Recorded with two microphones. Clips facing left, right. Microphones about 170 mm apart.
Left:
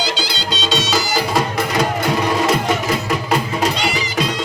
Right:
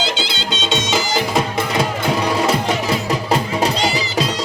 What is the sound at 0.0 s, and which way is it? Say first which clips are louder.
Music: even; 25° right (ahead or behind).